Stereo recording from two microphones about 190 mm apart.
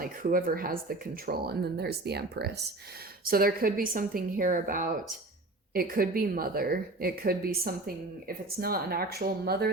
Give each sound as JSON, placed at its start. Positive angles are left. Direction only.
{"t": 0.0, "sound": "speech", "side_deg": -50}